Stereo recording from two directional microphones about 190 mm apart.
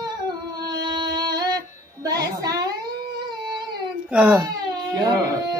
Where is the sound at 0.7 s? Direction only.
20° right (ahead or behind).